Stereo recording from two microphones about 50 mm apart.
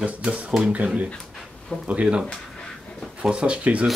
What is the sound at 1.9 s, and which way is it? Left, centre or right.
Speech, right.